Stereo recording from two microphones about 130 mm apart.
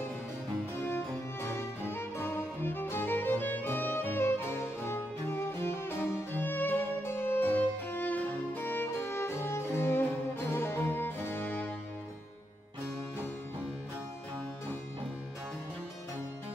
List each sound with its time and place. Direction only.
0.7 s music: 15° left (ahead or behind)